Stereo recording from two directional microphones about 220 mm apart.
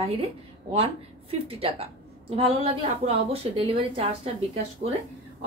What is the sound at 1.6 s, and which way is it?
A woman's voice, 25° right (ahead or behind).